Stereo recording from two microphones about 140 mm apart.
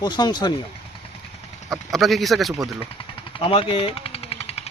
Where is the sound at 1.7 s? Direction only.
Centre (ahead or behind).